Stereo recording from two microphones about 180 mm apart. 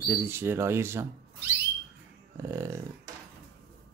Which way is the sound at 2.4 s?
15° right (ahead or behind).